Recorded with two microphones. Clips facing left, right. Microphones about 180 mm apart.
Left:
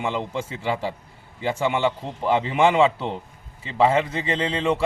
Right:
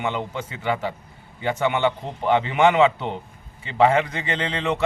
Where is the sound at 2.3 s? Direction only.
30° left (ahead or behind).